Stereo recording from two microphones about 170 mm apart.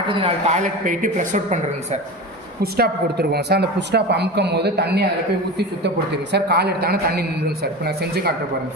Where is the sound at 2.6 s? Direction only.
65° right (ahead or behind).